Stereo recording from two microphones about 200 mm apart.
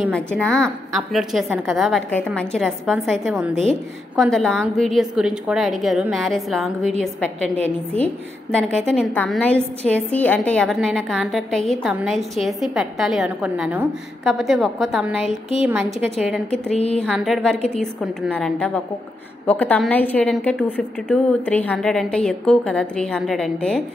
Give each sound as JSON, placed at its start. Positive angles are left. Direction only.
{"t": 0.1, "sound": "a woman's voice", "side_deg": 5}
{"t": 16.7, "sound": "speech", "side_deg": 30}
{"t": 17.0, "sound": "a woman's voice", "side_deg": 0}